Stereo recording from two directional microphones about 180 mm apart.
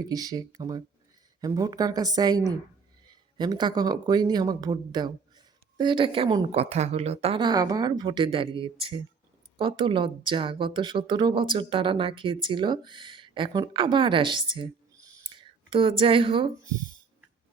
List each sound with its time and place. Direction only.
0.0 s a woman's voice: 20° right (ahead or behind)